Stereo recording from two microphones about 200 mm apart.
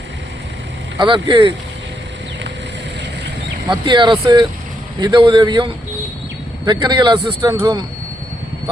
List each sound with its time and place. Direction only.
0.9 s speech: 25° right (ahead or behind)
3.7 s speech: 25° right (ahead or behind)